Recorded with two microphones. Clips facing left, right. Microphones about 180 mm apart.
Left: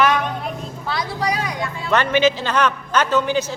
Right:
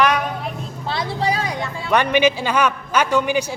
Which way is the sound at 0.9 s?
25° right (ahead or behind).